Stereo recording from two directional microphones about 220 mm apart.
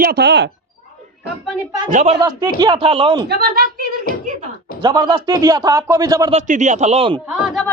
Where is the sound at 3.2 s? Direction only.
45° right (ahead or behind).